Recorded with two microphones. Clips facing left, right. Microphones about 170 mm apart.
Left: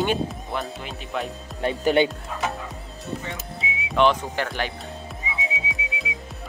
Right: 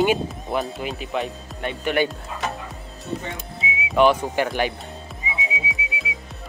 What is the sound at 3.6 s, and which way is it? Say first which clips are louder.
Whistling: right 3 dB; 5° right (ahead or behind).